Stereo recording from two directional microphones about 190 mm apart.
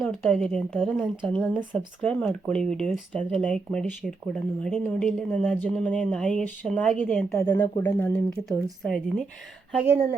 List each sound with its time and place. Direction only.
0.0 s speech: 5° left (ahead or behind)
9.8 s speech: 10° right (ahead or behind)